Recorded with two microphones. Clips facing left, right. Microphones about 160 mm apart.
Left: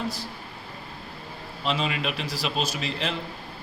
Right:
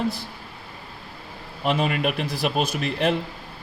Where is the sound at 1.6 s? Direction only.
55° right (ahead or behind).